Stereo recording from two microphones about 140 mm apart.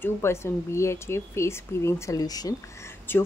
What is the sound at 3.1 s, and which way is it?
Speech, 15° left (ahead or behind).